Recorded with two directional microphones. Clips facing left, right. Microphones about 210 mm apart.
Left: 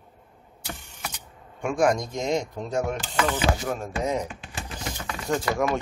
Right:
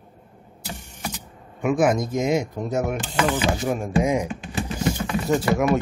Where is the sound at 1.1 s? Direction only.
5° right (ahead or behind).